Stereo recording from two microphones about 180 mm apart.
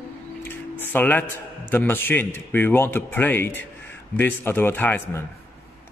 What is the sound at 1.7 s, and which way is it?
Speech, 10° left (ahead or behind).